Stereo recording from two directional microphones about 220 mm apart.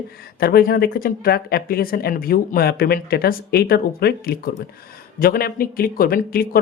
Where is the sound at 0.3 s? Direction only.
45° left (ahead or behind).